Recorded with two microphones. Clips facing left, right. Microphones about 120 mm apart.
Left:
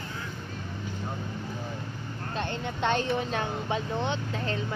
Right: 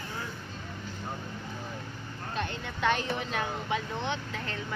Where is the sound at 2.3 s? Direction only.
30° left (ahead or behind).